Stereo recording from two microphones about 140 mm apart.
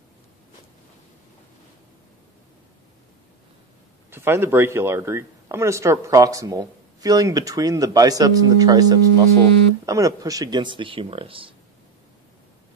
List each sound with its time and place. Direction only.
4.1 s speech: 15° right (ahead or behind); by 11.5 s 40° right (ahead or behind)